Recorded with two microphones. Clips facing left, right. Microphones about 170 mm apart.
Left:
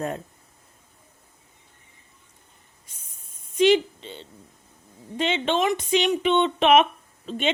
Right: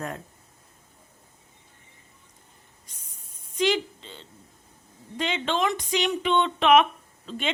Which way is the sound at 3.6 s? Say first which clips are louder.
Left 6 dB; 20° left (ahead or behind).